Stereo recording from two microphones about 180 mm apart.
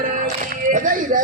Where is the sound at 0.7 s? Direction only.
50° right (ahead or behind).